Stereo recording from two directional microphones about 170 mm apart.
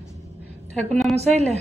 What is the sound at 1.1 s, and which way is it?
Speech, 40° right (ahead or behind).